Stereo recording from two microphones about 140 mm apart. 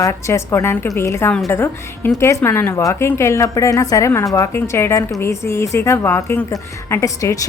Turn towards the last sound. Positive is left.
turn(degrees=20)  # may be behind; listen again after turning